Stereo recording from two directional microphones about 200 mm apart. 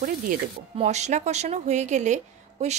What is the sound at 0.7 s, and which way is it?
Speech, 35° right (ahead or behind).